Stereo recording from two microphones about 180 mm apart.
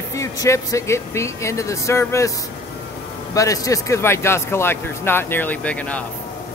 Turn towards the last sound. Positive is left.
turn(degrees=5)  # may be behind; listen again after turning